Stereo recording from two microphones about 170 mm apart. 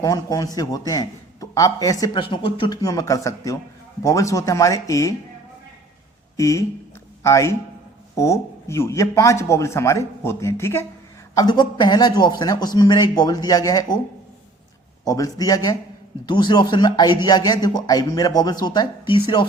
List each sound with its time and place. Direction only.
0.0 s a man's voice: 20° left (ahead or behind)
6.3 s a man's voice: 20° left (ahead or behind)
15.0 s a man's voice: 20° left (ahead or behind)